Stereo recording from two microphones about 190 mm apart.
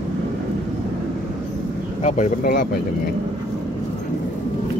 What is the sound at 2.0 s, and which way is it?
Speech, 35° left (ahead or behind).